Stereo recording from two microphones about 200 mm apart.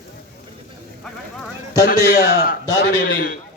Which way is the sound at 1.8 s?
50° left (ahead or behind).